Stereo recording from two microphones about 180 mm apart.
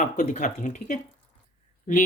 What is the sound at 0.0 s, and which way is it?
Speech, 45° left (ahead or behind).